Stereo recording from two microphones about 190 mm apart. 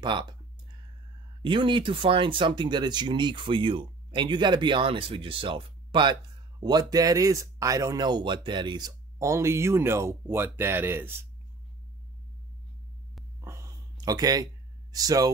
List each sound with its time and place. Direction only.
0.0 s speech: 25° right (ahead or behind)
1.4 s speech: 25° right (ahead or behind)
13.4 s a sound: 15° right (ahead or behind)